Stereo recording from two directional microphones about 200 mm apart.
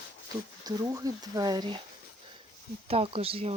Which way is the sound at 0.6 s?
20° right (ahead or behind).